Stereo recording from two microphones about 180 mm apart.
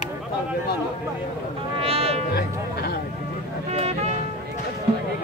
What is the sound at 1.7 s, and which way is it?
Music, 35° right (ahead or behind).